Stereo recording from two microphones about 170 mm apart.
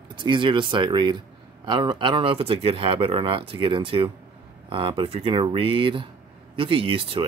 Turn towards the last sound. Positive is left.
turn(degrees=-30)  # may be behind; listen again after turning